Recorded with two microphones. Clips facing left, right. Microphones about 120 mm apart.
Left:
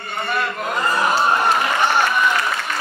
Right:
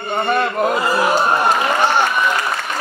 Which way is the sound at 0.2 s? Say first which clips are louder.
Right 6 dB; 50° right (ahead or behind).